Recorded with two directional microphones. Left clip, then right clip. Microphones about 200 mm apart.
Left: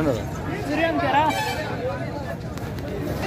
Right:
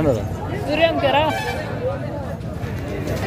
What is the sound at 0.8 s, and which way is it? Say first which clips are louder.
Speech: right 3 dB; 45° right (ahead or behind).